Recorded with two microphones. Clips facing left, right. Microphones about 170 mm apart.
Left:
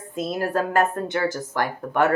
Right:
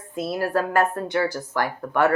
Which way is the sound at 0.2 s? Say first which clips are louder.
Even; 20° left (ahead or behind).